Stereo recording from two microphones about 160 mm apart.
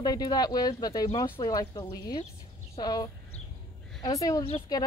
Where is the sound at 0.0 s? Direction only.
25° left (ahead or behind).